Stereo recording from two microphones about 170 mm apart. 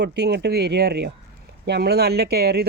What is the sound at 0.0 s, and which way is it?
Speech, 80° right.